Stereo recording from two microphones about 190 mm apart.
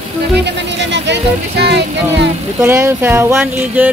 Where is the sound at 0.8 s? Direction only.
65° right (ahead or behind).